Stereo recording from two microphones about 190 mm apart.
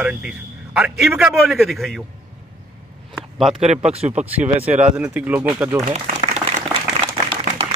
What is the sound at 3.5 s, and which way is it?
Speech, 35° right (ahead or behind).